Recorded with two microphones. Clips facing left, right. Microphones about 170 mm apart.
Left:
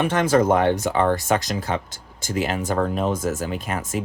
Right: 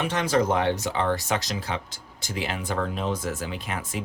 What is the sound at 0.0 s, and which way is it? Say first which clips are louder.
Speech: left 5 dB; 50° left (ahead or behind).